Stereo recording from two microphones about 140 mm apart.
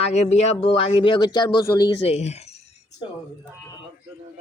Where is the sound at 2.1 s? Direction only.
50° left (ahead or behind).